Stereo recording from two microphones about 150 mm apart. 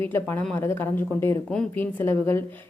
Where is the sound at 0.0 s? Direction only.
15° left (ahead or behind).